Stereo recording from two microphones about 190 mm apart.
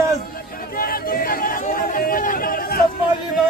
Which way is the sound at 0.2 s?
50° left (ahead or behind).